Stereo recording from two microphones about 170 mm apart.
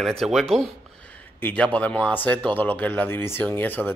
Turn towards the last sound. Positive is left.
turn(degrees=10)  # may be behind; listen again after turning